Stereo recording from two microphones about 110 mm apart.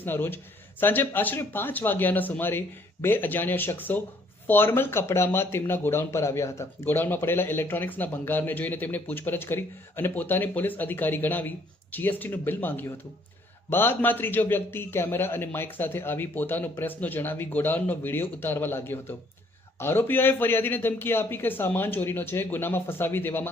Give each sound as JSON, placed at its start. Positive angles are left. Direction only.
{"t": 0.0, "sound": "speech", "side_deg": 20}